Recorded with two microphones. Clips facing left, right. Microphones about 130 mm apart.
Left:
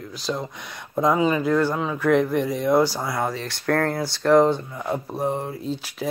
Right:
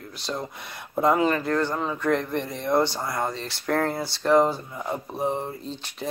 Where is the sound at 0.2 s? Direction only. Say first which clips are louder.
Left 3 dB; centre (ahead or behind).